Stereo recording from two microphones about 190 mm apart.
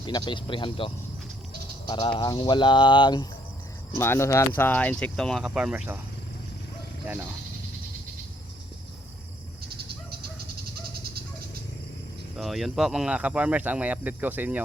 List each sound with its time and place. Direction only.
0.0 s speech: 25° left (ahead or behind)
1.9 s speech: 25° left (ahead or behind)
3.9 s speech: 15° left (ahead or behind); by 6.0 s 5° right (ahead or behind)
7.1 s speech: 10° right (ahead or behind)
9.6 s a sound: 55° right (ahead or behind)
12.4 s speech: centre (ahead or behind)